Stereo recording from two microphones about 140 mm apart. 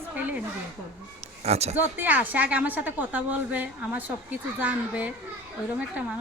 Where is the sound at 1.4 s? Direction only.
50° right (ahead or behind).